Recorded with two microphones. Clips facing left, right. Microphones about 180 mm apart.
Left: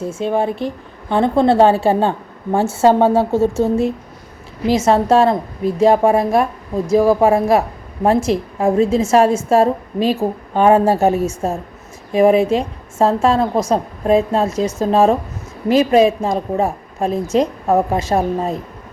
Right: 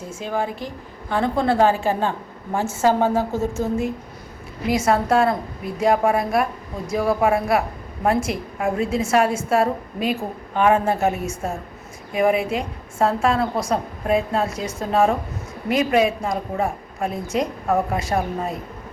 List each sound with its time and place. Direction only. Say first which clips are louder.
0.2 s a woman's voice: left 7 dB; 25° left (ahead or behind)